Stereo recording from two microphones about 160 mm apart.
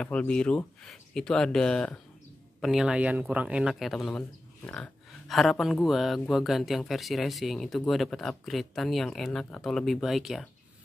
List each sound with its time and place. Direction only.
0.0 s speech: 5° left (ahead or behind)